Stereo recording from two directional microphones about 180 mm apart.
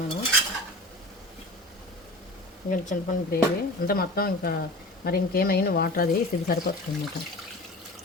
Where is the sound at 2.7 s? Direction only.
50° left (ahead or behind).